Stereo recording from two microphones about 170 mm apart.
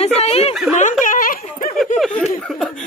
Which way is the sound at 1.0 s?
50° left (ahead or behind).